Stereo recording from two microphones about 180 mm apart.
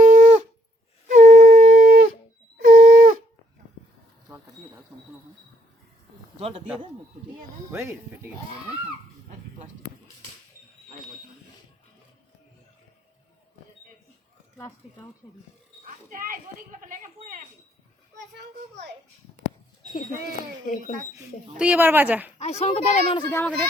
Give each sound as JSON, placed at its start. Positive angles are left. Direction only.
{"t": 0.0, "sound": "shofar", "side_deg": -45}
{"t": 1.0, "sound": "wind instrument", "side_deg": -45}
{"t": 7.7, "sound": "speech", "side_deg": -15}
{"t": 16.0, "sound": "speech", "side_deg": -50}
{"t": 18.3, "sound": "a child's voice", "side_deg": -75}
{"t": 19.9, "sound": "speech", "side_deg": 45}
{"t": 21.6, "sound": "speech", "side_deg": -10}
{"t": 22.4, "sound": "speech", "side_deg": 35}
{"t": 23.3, "sound": "speech", "side_deg": 10}